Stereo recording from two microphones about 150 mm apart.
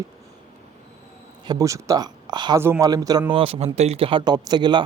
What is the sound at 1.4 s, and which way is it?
Speech, 25° right (ahead or behind).